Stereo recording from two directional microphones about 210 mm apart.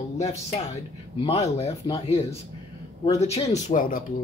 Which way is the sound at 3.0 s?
25° left (ahead or behind).